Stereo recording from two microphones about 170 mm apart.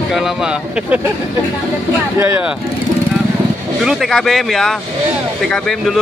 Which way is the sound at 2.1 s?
15° right (ahead or behind).